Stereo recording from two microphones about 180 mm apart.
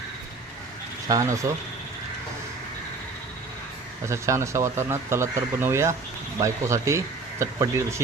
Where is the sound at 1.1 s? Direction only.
20° right (ahead or behind).